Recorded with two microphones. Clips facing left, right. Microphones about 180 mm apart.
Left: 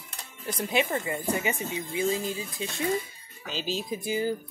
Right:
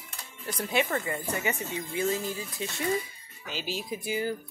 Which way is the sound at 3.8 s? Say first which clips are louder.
Left 2 dB; 20° left (ahead or behind).